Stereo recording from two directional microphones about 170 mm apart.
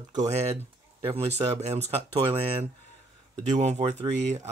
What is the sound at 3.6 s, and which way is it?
Speech, 40° right (ahead or behind).